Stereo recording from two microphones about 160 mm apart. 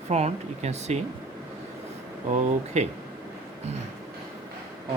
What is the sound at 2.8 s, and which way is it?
Speech, 45° right (ahead or behind).